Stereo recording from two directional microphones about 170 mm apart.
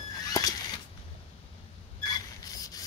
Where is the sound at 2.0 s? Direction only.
25° left (ahead or behind).